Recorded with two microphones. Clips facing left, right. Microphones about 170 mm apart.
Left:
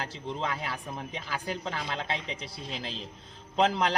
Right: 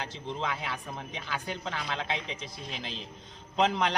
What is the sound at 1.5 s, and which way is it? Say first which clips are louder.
Speech: left 3 dB; 35° left (ahead or behind).